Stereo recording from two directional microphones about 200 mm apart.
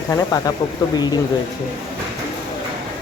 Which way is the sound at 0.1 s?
15° left (ahead or behind).